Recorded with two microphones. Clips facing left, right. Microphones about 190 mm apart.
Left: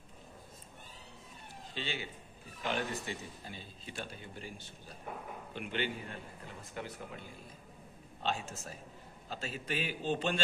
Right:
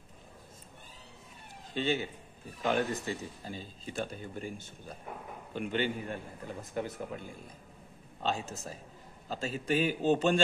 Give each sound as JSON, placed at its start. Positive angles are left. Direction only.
{"t": 1.7, "sound": "a man's voice", "side_deg": -45}